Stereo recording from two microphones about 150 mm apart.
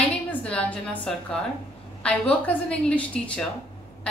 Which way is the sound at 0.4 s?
10° left (ahead or behind).